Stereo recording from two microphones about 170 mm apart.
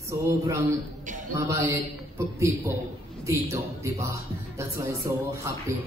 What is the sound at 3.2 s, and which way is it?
Speech, 20° right (ahead or behind).